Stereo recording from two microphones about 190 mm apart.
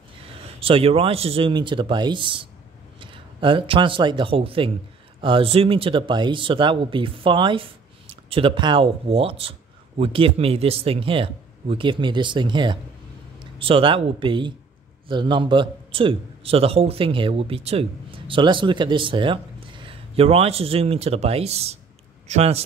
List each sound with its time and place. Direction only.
0.6 s a man's voice: 30° right (ahead or behind)